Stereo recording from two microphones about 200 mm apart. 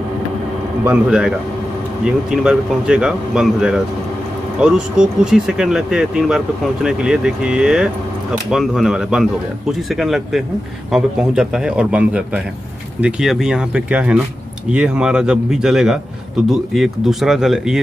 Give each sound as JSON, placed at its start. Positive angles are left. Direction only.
{"t": 0.8, "sound": "speech", "side_deg": -5}